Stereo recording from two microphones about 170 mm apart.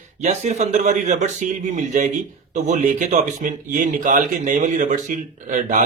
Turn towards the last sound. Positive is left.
turn(degrees=-50)  # may be behind; listen again after turning